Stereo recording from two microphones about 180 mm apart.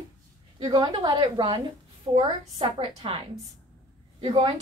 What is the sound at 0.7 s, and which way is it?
A woman's voice, 25° right (ahead or behind).